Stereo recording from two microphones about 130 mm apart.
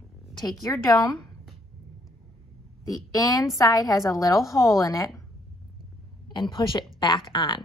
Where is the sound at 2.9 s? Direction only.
30° left (ahead or behind).